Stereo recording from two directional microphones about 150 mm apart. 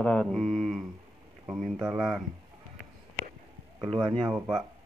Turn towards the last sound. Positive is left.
turn(degrees=-10)  # may be behind; listen again after turning